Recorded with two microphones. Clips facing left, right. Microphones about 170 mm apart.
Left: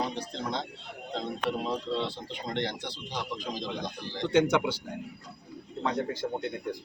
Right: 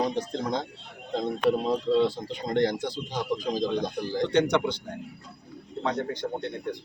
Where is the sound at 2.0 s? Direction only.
45° right (ahead or behind).